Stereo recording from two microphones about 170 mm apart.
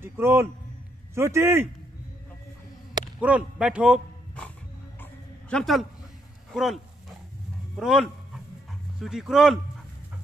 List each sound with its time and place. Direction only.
0.0 s a man's voice: 15° right (ahead or behind)
3.2 s a man's voice: 10° right (ahead or behind)
5.0 s a sound: 5° left (ahead or behind)
6.5 s dog: centre (ahead or behind)
7.7 s speech: centre (ahead or behind)